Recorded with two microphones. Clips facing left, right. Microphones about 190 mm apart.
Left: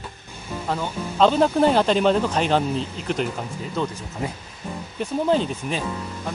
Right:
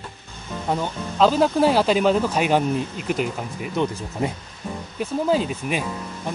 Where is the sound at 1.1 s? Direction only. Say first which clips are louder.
Even; 5° right (ahead or behind).